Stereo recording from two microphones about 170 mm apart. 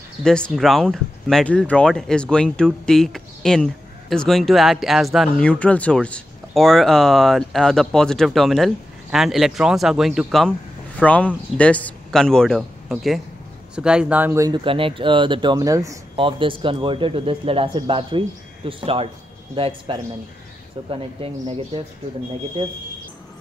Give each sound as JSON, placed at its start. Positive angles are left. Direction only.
{"t": 0.2, "sound": "speech", "side_deg": 5}
{"t": 16.2, "sound": "a man's voice", "side_deg": -30}